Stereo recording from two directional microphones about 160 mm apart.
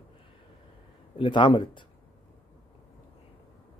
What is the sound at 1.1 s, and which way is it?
Speech, 30° left (ahead or behind).